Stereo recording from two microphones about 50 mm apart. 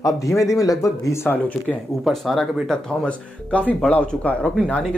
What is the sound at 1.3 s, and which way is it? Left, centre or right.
Speech, left.